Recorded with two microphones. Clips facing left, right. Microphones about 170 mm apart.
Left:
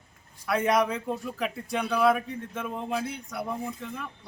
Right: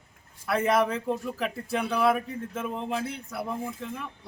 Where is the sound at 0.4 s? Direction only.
5° right (ahead or behind).